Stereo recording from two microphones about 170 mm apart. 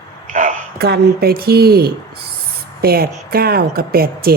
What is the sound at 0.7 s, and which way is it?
Speech, 65° right (ahead or behind).